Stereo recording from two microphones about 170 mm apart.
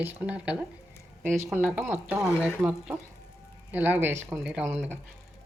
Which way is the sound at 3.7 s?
10° right (ahead or behind).